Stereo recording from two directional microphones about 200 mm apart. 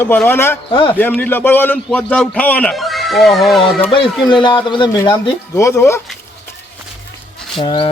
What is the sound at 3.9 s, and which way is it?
A man's voice, 20° left (ahead or behind).